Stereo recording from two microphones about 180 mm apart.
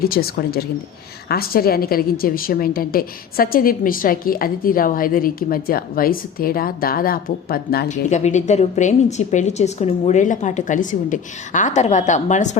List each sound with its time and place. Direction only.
0.0 s a woman's voice: 55° left (ahead or behind)
7.9 s a woman's voice: 40° left (ahead or behind)